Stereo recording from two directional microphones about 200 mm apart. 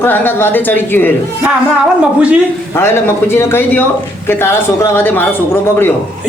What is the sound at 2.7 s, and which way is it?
Speech, 10° left (ahead or behind).